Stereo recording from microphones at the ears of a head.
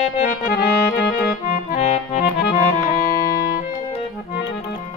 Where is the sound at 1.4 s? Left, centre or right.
Left.